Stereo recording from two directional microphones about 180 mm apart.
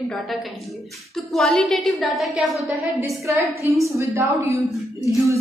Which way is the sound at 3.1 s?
15° right (ahead or behind).